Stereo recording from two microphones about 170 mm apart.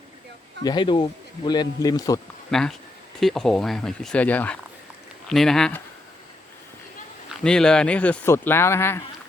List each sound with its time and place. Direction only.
0.6 s a man's voice: 25° left (ahead or behind)
2.5 s speech: 5° left (ahead or behind)
7.3 s speech: 5° left (ahead or behind)